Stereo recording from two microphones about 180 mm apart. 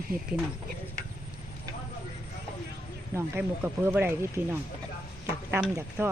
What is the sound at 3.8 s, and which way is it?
Speech, 15° right (ahead or behind).